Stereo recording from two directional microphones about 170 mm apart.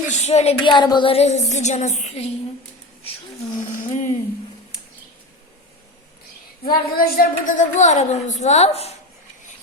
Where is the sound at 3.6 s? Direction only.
45° left (ahead or behind).